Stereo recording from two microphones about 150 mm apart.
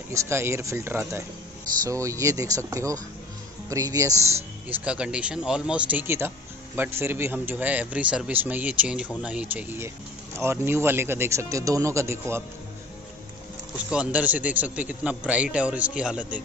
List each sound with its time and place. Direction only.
0.1 s speech: 15° right (ahead or behind)
4.6 s speech: 5° right (ahead or behind)
13.8 s speech: 10° right (ahead or behind)